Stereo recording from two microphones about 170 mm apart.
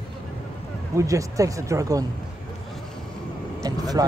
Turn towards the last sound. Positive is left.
turn(degrees=-20)  # may be behind; listen again after turning